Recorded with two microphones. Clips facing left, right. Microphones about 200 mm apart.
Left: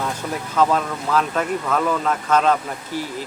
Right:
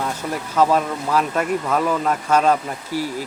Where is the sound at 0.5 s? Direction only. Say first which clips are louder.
Right 2 dB; 10° right (ahead or behind).